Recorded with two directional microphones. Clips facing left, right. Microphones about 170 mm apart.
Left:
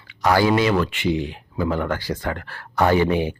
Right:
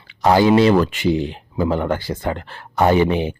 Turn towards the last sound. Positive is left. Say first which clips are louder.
# right 2 dB
turn(degrees=-20)  # may be behind; listen again after turning